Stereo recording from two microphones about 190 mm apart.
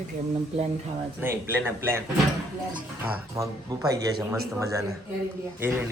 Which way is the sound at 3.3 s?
20° right (ahead or behind).